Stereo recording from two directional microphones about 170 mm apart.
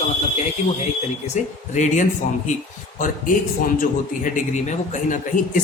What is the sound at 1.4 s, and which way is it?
Speech, 45° left (ahead or behind).